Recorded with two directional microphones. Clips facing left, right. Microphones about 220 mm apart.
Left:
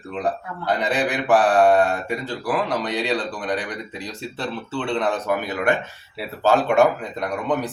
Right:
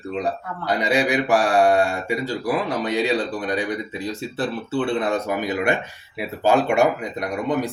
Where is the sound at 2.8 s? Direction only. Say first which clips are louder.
Right 3 dB; 10° right (ahead or behind).